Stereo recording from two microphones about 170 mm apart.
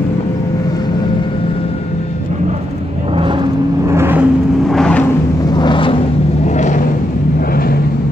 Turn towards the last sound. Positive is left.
turn(degrees=45)  # may be behind; listen again after turning